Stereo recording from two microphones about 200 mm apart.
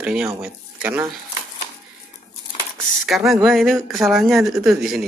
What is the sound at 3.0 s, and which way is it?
Speech, centre (ahead or behind).